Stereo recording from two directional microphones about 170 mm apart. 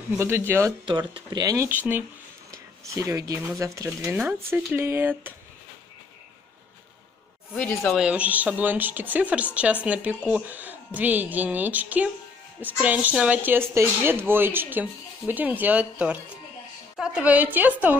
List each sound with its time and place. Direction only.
0.5 s speech: 15° right (ahead or behind)
0.8 s speech: 30° right (ahead or behind); by 5.3 s 10° right (ahead or behind)
7.5 s speech: 5° left (ahead or behind)
8.0 s speech: 10° right (ahead or behind)